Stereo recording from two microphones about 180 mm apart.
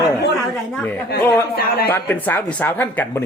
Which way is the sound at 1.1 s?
60° left (ahead or behind).